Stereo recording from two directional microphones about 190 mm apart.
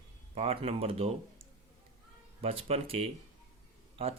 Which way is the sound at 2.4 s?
30° right (ahead or behind).